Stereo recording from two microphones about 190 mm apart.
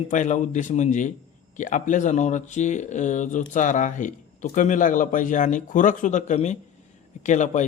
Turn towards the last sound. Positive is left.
turn(degrees=40)  # may be behind; listen again after turning